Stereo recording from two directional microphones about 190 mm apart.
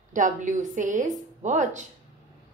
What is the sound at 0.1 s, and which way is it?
A woman's voice, 40° right (ahead or behind).